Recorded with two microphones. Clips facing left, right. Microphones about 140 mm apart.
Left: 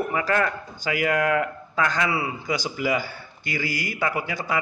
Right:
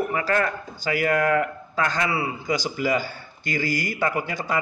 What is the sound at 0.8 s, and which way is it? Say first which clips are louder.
Speech: right 1 dB; 15° left (ahead or behind).